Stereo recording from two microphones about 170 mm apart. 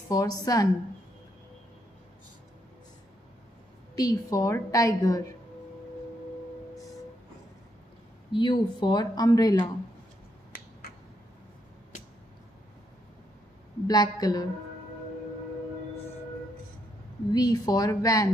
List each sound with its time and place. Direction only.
0.1 s a woman's voice: 20° left (ahead or behind)
3.9 s a woman's voice: 20° left (ahead or behind)
8.3 s a woman's voice: 25° left (ahead or behind)
13.8 s a woman's voice: 20° left (ahead or behind)
17.3 s a woman's voice: 20° left (ahead or behind)